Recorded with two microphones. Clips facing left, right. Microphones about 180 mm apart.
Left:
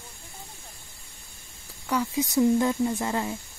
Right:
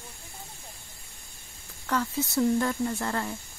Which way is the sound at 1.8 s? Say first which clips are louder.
Left 2 dB; 15° left (ahead or behind).